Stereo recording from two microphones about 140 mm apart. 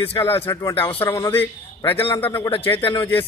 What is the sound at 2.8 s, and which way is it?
Speech, 35° left (ahead or behind).